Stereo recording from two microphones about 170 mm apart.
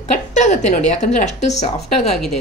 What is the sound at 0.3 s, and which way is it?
A woman's voice, 45° left (ahead or behind).